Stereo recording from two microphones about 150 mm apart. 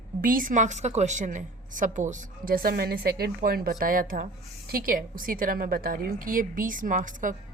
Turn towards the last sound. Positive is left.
turn(degrees=-60)  # may be behind; listen again after turning